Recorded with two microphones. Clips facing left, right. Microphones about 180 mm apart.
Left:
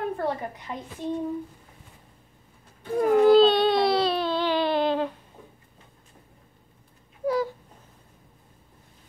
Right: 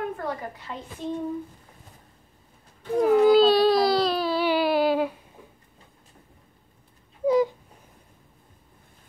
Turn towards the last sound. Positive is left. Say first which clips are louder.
# right 5 dB
turn(degrees=-20)  # may be behind; listen again after turning